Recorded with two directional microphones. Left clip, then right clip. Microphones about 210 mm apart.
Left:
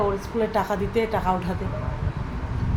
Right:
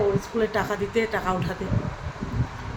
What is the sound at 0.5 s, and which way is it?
Speech, 5° right (ahead or behind).